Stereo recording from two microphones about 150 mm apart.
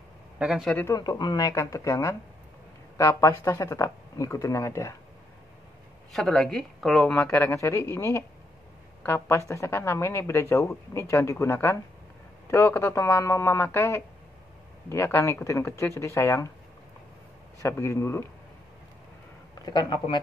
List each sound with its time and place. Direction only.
0.4 s speech: 5° right (ahead or behind)
0.9 s speech: 30° left (ahead or behind)
6.1 s speech: 5° left (ahead or behind)
7.2 s a man's voice: 15° left (ahead or behind)
17.6 s speech: 20° left (ahead or behind)
19.6 s speech: 30° left (ahead or behind)